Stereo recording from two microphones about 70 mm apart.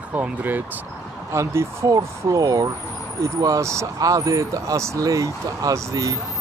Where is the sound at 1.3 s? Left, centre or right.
Right.